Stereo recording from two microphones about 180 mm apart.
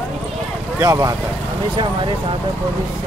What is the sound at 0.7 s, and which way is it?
Speech, 20° right (ahead or behind).